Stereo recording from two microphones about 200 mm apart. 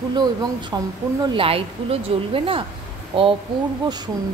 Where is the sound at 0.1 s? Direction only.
20° right (ahead or behind).